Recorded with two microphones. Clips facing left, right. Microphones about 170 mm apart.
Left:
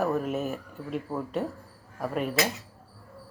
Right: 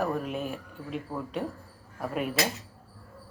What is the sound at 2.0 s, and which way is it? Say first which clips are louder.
Speech: left 1 dB; centre (ahead or behind).